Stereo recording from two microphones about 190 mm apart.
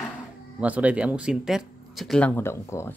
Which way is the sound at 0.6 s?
5° right (ahead or behind).